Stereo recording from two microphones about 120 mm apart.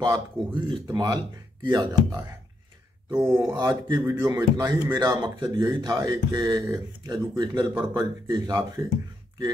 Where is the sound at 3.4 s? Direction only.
30° right (ahead or behind).